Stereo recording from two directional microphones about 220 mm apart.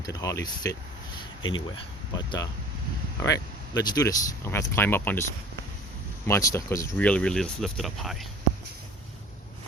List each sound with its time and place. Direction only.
0.0 s speech: 15° left (ahead or behind)
2.1 s speech: 20° left (ahead or behind)
6.2 s speech: 10° left (ahead or behind)